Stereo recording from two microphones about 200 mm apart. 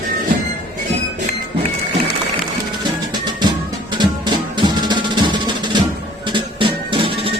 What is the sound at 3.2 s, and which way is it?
Music, 20° right (ahead or behind).